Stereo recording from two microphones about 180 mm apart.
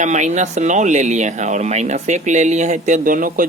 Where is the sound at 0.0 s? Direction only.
40° right (ahead or behind).